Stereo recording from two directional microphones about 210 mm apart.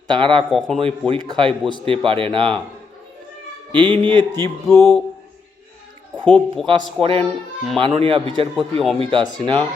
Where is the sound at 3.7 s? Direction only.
20° right (ahead or behind).